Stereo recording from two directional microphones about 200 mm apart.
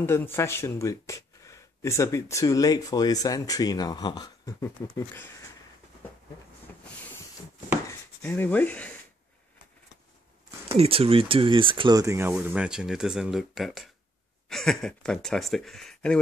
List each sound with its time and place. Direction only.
0.0 s speech: 10° left (ahead or behind)
6.7 s train: 10° left (ahead or behind)
8.2 s speech: 10° left (ahead or behind)
10.7 s speech: 30° right (ahead or behind); by 16.2 s 5° left (ahead or behind)